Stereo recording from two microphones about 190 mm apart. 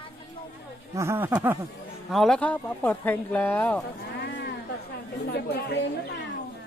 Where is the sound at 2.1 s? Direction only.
Centre (ahead or behind).